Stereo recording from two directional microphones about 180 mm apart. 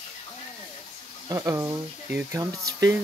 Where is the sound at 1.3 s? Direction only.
15° right (ahead or behind).